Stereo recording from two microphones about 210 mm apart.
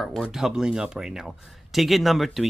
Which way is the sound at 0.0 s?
Centre (ahead or behind).